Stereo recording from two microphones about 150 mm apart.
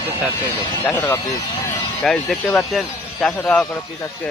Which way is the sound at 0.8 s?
15° left (ahead or behind).